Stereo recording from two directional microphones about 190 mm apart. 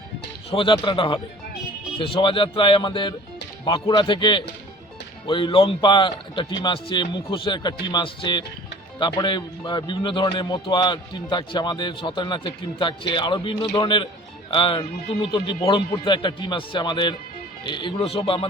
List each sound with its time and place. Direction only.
0.5 s speech: 25° left (ahead or behind)